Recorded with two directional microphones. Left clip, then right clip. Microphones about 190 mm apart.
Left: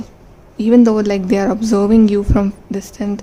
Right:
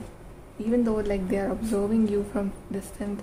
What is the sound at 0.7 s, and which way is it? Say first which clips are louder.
A woman's voice: left 13 dB; 50° left (ahead or behind).